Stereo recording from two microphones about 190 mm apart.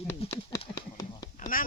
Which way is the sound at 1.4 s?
45° left (ahead or behind).